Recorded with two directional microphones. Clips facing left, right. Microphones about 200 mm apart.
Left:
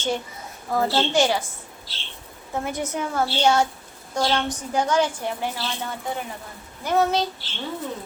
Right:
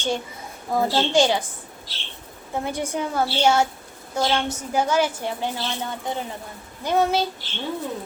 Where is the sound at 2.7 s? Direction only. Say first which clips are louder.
Right 1 dB; 10° right (ahead or behind).